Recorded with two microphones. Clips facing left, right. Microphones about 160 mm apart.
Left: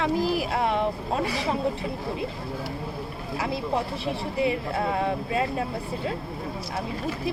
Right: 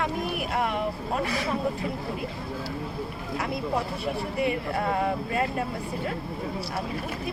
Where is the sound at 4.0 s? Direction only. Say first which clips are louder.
Left 1 dB; 30° left (ahead or behind).